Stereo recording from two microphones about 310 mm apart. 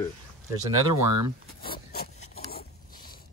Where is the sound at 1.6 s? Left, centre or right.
Left.